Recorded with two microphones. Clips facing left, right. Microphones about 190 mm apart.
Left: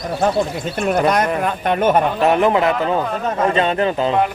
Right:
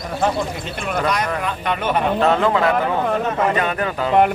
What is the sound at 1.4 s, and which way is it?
Speech, 45° left (ahead or behind).